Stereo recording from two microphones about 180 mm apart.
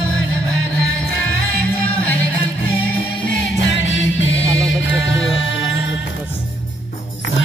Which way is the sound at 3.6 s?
90° left.